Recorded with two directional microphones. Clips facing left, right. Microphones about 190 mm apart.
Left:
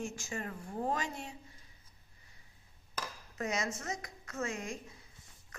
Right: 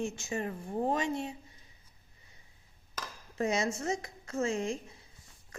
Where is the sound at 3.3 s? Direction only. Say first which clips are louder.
Right 6 dB; 30° right (ahead or behind).